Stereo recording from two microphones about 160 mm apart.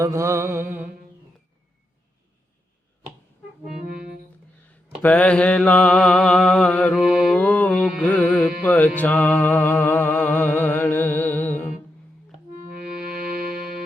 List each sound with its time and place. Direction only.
0.0 s music: 20° right (ahead or behind)
5.0 s mantra: 10° left (ahead or behind)
7.0 s mantra: 5° right (ahead or behind)
7.3 s mantra: 10° left (ahead or behind)
8.6 s music: 10° left (ahead or behind)